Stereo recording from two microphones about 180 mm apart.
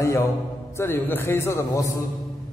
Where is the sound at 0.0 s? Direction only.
15° left (ahead or behind).